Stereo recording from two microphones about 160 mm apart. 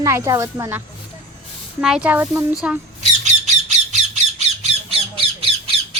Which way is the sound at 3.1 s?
45° right (ahead or behind).